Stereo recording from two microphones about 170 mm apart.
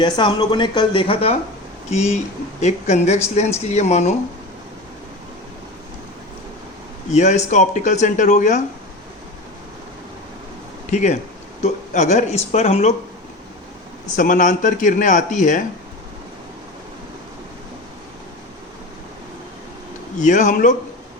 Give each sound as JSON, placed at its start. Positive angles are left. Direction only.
{"t": 0.0, "sound": "speech", "side_deg": 25}
{"t": 7.1, "sound": "speech", "side_deg": 40}
{"t": 10.9, "sound": "speech", "side_deg": 45}
{"t": 14.2, "sound": "speech", "side_deg": 50}
{"t": 20.1, "sound": "speech", "side_deg": 45}